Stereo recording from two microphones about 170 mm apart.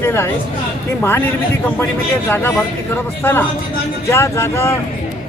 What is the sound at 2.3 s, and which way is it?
Speech, 10° left (ahead or behind).